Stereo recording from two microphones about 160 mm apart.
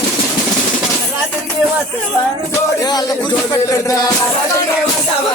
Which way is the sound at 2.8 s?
25° left (ahead or behind).